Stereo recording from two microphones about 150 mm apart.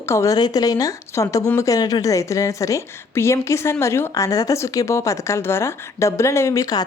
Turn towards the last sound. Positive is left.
turn(degrees=20)  # may be behind; listen again after turning